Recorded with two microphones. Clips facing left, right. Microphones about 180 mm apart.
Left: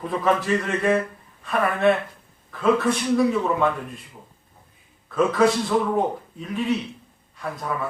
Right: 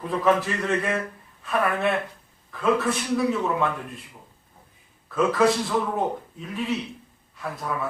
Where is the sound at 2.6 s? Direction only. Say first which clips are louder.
Left 3 dB; centre (ahead or behind).